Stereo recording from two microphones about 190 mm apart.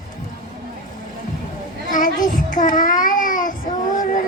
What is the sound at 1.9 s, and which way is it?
A child's voice, 45° left (ahead or behind).